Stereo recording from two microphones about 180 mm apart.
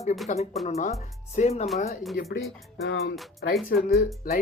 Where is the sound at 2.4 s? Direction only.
Centre (ahead or behind).